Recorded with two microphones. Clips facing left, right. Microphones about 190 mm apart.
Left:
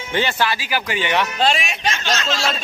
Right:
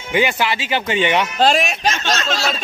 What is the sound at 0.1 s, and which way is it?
Speech, 15° right (ahead or behind).